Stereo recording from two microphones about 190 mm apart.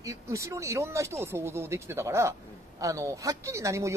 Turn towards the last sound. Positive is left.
turn(degrees=-15)  # may be behind; listen again after turning